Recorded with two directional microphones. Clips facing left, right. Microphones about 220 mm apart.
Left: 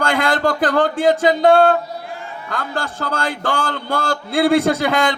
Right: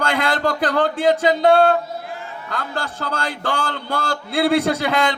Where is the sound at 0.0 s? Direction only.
50° left (ahead or behind).